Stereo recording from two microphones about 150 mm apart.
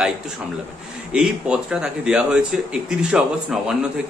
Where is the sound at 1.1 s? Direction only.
5° right (ahead or behind).